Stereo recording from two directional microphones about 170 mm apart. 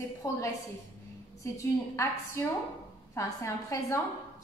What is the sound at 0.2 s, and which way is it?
A woman's voice, 20° left (ahead or behind).